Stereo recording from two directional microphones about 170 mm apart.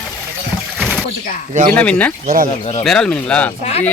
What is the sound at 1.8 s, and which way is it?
Speech, 10° left (ahead or behind).